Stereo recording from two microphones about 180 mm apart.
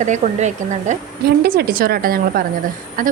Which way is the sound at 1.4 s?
60° right (ahead or behind).